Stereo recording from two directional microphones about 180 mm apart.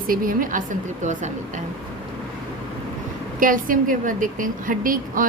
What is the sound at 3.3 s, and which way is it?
A woman's voice, 50° right (ahead or behind).